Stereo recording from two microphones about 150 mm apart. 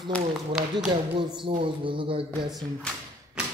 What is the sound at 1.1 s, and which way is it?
Speech, 35° right (ahead or behind).